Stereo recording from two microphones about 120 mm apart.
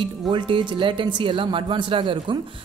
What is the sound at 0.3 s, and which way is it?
Speech, 45° right (ahead or behind).